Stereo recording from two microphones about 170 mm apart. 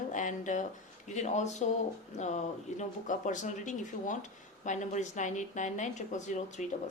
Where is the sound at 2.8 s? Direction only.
45° left (ahead or behind).